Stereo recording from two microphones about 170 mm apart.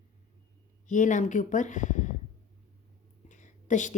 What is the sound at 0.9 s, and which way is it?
Speech, 45° left (ahead or behind).